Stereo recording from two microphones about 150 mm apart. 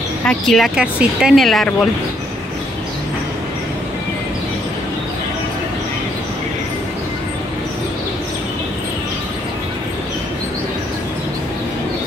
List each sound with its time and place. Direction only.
0.3 s speech: centre (ahead or behind)